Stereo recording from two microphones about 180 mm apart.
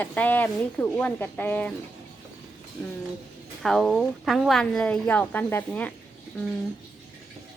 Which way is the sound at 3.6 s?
Centre (ahead or behind).